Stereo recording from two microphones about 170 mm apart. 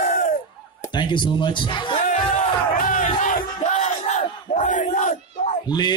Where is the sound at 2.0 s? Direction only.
45° left (ahead or behind).